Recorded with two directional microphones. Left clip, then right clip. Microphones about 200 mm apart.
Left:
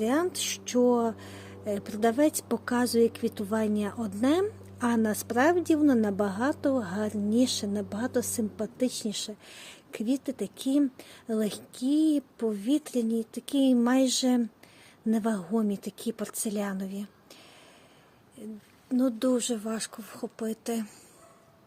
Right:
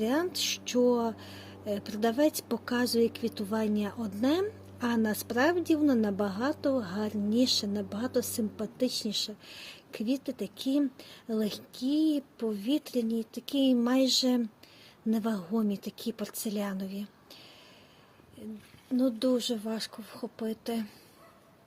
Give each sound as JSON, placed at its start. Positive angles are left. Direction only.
{"t": 0.0, "sound": "speech", "side_deg": 15}
{"t": 18.9, "sound": "speech", "side_deg": 15}